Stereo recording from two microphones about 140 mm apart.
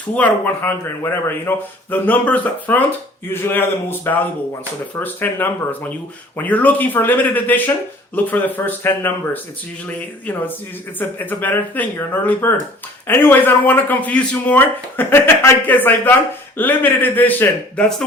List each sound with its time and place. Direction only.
0.2 s a man's voice: 15° left (ahead or behind)
11.0 s a man's voice: 15° left (ahead or behind)